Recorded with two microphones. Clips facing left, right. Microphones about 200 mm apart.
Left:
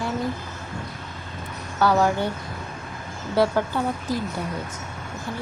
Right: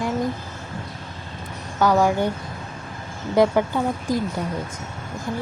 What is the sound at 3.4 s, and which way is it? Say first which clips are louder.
Speech: right 3 dB; 15° right (ahead or behind).